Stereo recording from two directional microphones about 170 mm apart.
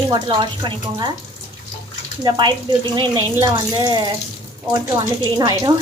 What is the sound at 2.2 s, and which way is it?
Speech, 25° right (ahead or behind).